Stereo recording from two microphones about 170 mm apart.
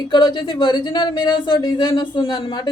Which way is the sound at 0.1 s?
25° left (ahead or behind).